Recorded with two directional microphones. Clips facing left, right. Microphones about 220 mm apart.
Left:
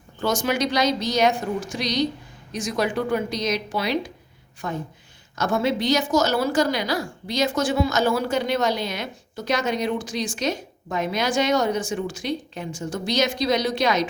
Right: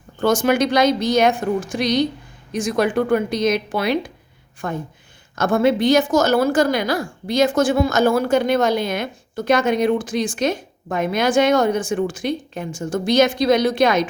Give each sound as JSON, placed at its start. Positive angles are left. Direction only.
{"t": 0.2, "sound": "a woman's voice", "side_deg": -55}